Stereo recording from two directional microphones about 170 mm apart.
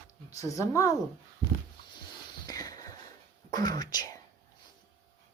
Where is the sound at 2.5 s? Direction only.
20° left (ahead or behind).